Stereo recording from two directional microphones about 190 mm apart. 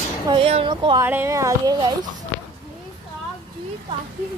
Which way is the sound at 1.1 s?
15° right (ahead or behind).